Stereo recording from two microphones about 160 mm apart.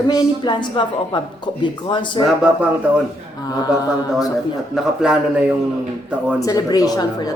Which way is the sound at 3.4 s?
25° left (ahead or behind).